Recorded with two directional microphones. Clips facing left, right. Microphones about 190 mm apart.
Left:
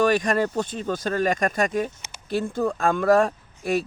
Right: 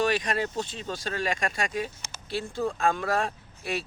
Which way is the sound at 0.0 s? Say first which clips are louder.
Left 6 dB; 50° left (ahead or behind).